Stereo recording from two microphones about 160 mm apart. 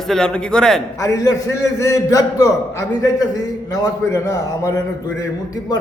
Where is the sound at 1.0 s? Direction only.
20° left (ahead or behind).